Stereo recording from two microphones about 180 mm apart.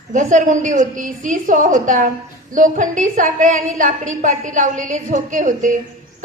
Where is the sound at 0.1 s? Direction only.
45° right (ahead or behind).